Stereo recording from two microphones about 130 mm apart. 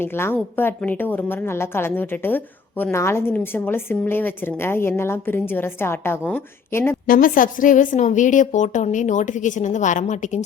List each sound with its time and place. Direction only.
0.0 s a woman's voice: 15° left (ahead or behind)
7.1 s a woman's voice: 90° left; by 10.4 s 65° left (ahead or behind)